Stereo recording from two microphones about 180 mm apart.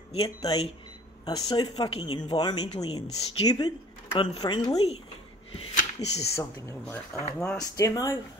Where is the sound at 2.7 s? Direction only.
35° left (ahead or behind).